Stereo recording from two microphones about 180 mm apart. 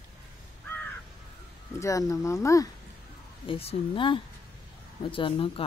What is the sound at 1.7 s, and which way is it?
Speech, 20° left (ahead or behind).